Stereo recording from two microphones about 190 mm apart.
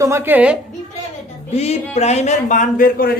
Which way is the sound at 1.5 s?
35° left (ahead or behind).